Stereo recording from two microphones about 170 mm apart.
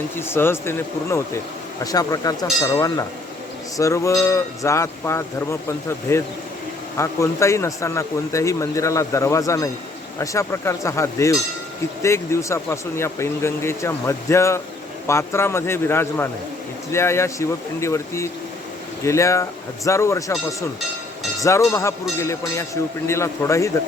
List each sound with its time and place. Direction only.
0.2 s a man's voice: 15° left (ahead or behind)
21.4 s a man's voice: 20° left (ahead or behind)